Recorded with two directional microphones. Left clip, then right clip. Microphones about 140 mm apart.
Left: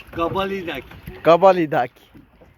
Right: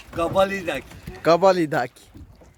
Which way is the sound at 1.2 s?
Centre (ahead or behind).